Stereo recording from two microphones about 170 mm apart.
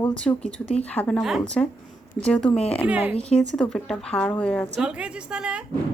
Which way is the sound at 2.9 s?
10° right (ahead or behind).